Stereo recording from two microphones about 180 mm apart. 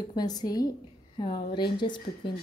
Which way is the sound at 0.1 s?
20° left (ahead or behind).